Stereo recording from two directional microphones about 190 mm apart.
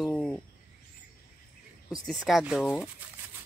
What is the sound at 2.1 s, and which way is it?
Speech, centre (ahead or behind).